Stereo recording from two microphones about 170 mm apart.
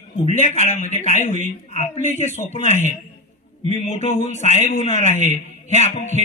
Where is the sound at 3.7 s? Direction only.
40° left (ahead or behind).